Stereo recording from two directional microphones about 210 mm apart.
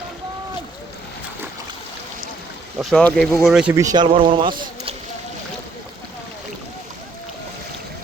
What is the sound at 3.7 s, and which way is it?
Speech, 15° right (ahead or behind).